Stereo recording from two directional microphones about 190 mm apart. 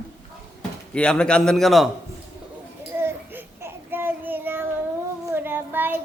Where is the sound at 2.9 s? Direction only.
10° right (ahead or behind).